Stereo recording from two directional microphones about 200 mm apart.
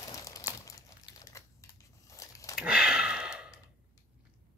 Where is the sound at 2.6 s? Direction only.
5° right (ahead or behind).